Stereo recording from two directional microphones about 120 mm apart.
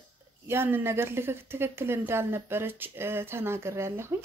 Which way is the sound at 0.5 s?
20° right (ahead or behind).